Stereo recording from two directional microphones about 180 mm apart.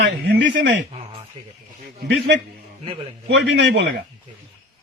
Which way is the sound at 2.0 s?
75° right (ahead or behind).